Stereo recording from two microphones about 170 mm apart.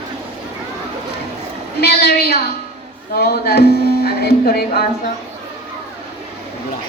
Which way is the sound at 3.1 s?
70° left (ahead or behind).